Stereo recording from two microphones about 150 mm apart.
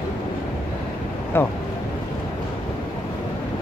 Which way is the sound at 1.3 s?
15° left (ahead or behind).